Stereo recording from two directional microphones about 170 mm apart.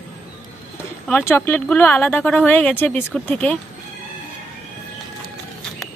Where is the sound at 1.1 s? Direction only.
15° left (ahead or behind).